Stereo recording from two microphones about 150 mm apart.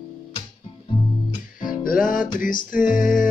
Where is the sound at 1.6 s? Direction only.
70° left (ahead or behind).